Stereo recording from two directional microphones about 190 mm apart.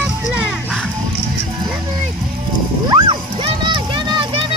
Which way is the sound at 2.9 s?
25° right (ahead or behind).